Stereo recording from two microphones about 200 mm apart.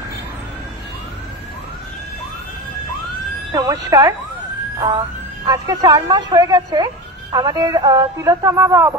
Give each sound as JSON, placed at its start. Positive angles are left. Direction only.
{"t": 3.5, "sound": "speech", "side_deg": -15}